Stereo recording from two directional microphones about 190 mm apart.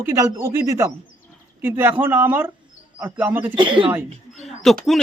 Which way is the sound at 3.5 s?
25° right (ahead or behind).